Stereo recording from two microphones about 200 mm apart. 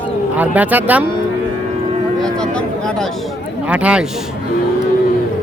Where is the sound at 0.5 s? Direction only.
10° right (ahead or behind).